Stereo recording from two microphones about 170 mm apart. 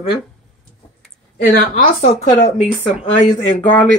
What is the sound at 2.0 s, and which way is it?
Speech, 40° left (ahead or behind).